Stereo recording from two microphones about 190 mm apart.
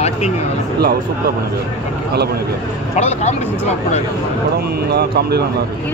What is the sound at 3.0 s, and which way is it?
Speech, 35° left (ahead or behind).